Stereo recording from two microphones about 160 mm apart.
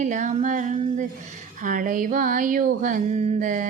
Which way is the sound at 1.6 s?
55° right (ahead or behind).